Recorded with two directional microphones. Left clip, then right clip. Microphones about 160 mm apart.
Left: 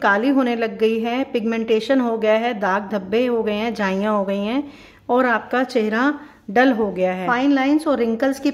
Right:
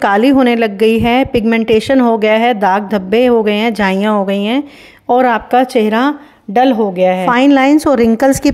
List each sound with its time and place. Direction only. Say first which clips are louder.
0.0 s a woman's voice: right 7 dB; 45° right (ahead or behind); by 7.2 s 25° right (ahead or behind)
7.2 s a woman's voice: right 8 dB; 55° right (ahead or behind)